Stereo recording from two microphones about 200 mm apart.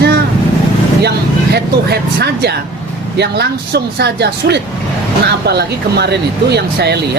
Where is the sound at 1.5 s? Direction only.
55° right (ahead or behind).